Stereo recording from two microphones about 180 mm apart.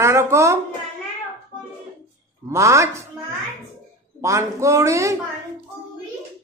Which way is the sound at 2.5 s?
15° right (ahead or behind).